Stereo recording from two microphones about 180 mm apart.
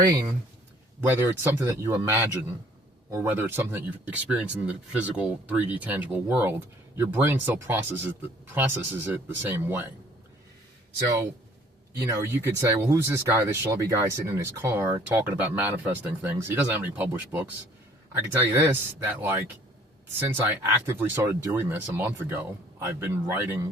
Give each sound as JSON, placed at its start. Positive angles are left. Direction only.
{"t": 1.1, "sound": "speech", "side_deg": -10}
{"t": 11.9, "sound": "speech", "side_deg": -15}